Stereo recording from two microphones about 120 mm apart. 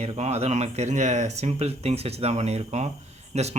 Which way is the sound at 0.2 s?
65° right (ahead or behind).